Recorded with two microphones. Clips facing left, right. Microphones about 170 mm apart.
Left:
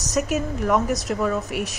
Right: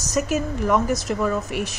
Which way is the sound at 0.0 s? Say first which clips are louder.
Right 1 dB; centre (ahead or behind).